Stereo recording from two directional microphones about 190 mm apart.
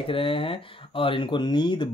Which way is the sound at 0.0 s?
30° left (ahead or behind).